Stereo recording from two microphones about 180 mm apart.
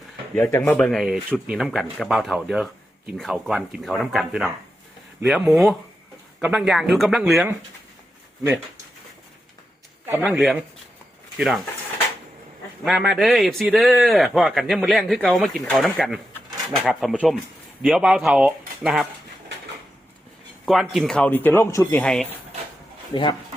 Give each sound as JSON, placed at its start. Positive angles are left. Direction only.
{"t": 0.7, "sound": "a man's voice", "side_deg": 5}
{"t": 10.1, "sound": "speech", "side_deg": -10}
{"t": 10.3, "sound": "a man's voice", "side_deg": 0}
{"t": 12.8, "sound": "a man's voice", "side_deg": 0}
{"t": 20.7, "sound": "speech", "side_deg": 0}
{"t": 23.1, "sound": "speech", "side_deg": 25}